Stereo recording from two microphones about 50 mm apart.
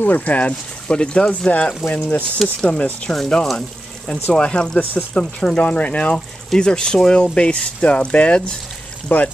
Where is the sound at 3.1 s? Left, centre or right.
Centre.